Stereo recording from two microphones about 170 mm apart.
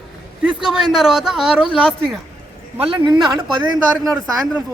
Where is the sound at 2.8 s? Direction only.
30° right (ahead or behind).